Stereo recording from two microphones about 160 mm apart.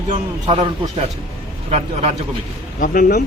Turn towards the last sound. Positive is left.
turn(degrees=70)  # may be behind; listen again after turning